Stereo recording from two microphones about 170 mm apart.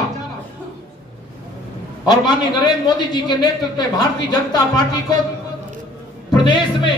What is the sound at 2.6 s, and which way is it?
A man's voice, 25° left (ahead or behind).